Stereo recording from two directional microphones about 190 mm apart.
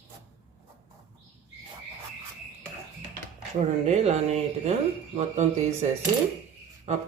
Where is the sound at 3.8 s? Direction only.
35° right (ahead or behind).